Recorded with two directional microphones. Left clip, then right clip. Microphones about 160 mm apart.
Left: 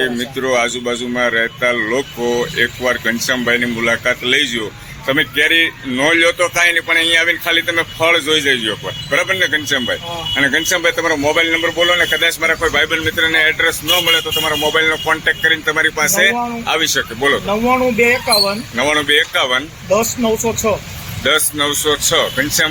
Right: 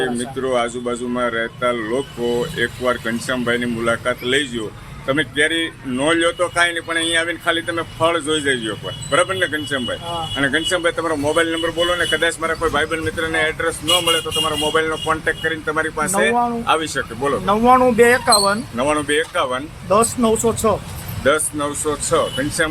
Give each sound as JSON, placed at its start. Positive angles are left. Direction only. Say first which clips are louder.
{"t": 0.0, "sound": "speech", "louder": "left 4 dB", "side_deg": 15}
{"t": 11.5, "sound": "speech", "louder": "left 5 dB", "side_deg": 25}
{"t": 17.4, "sound": "speech", "louder": "right 2 dB", "side_deg": -20}
{"t": 18.8, "sound": "speech", "louder": "left 7 dB", "side_deg": 15}
{"t": 19.9, "sound": "speech", "louder": "left 1 dB", "side_deg": -25}
{"t": 21.2, "sound": "speech", "louder": "left 3 dB", "side_deg": 15}